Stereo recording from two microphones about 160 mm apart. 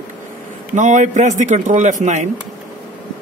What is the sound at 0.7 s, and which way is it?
Speech, 50° right (ahead or behind).